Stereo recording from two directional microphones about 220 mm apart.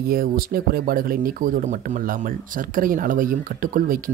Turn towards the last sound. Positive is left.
turn(degrees=-40)  # may be behind; listen again after turning